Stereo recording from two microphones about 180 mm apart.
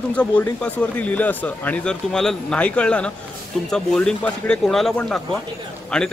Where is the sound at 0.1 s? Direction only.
5° left (ahead or behind).